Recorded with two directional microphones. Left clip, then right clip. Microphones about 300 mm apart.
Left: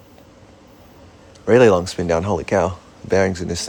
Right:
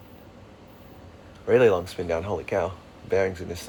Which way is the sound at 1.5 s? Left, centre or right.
Left.